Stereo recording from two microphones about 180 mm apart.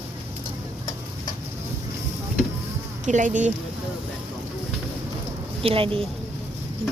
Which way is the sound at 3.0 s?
45° right (ahead or behind).